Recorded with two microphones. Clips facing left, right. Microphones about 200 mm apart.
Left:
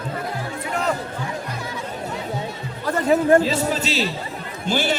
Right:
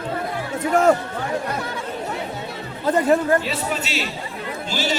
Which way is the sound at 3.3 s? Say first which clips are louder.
Left 4 dB; 30° left (ahead or behind).